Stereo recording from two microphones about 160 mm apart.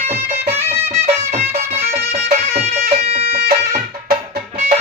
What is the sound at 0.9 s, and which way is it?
Music, 45° right (ahead or behind).